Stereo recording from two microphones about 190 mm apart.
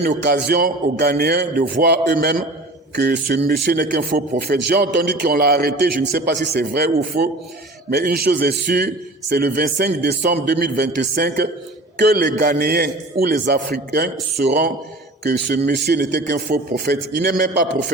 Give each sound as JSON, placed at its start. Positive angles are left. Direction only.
{"t": 0.2, "sound": "a man's voice", "side_deg": -60}
{"t": 2.1, "sound": "a man's voice", "side_deg": -50}
{"t": 7.1, "sound": "a man's voice", "side_deg": -50}